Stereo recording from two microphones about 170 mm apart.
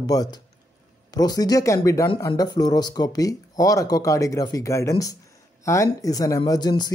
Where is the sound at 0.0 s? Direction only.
20° left (ahead or behind).